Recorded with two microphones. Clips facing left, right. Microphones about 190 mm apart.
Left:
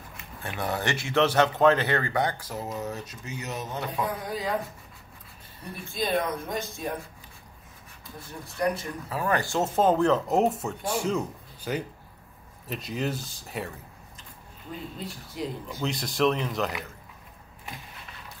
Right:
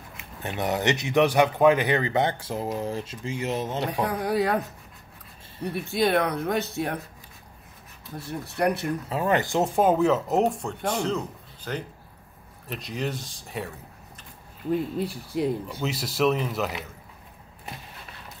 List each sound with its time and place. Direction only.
0.2 s speech: 20° right (ahead or behind)
3.8 s speech: 75° right (ahead or behind)
5.6 s speech: 70° right (ahead or behind)
8.2 s speech: 70° right (ahead or behind)
9.1 s speech: 20° right (ahead or behind); by 13.7 s centre (ahead or behind)
15.3 s speech: 60° right (ahead or behind)
15.7 s speech: 5° right (ahead or behind)